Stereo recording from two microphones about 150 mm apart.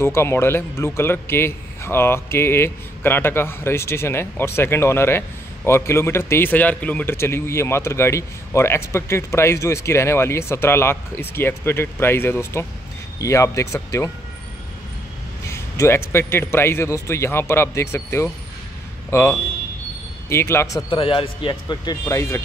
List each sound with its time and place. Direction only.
0.0 s a man's voice: 15° left (ahead or behind)
15.4 s a man's voice: 20° left (ahead or behind)
20.9 s speech: 35° left (ahead or behind)
22.0 s speech: 20° left (ahead or behind)